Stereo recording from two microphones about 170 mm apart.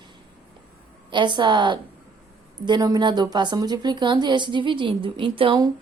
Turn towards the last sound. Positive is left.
turn(degrees=-30)  # may be behind; listen again after turning